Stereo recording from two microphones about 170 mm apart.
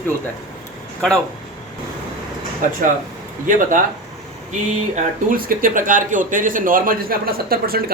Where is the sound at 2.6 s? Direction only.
50° right (ahead or behind).